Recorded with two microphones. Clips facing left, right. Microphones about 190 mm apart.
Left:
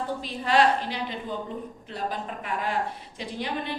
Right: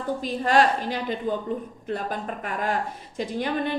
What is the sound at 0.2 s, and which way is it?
A woman's voice, 45° right (ahead or behind).